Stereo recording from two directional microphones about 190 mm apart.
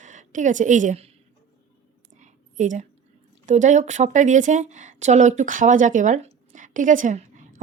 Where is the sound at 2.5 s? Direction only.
40° right (ahead or behind).